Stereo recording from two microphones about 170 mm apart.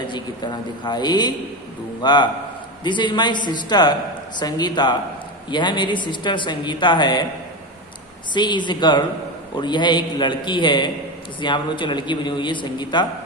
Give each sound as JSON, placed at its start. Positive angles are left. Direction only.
{"t": 0.0, "sound": "a man's voice", "side_deg": 25}
{"t": 8.3, "sound": "a man's voice", "side_deg": 25}